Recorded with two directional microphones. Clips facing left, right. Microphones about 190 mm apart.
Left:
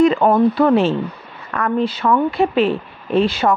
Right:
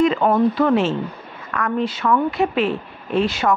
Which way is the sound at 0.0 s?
40° left (ahead or behind).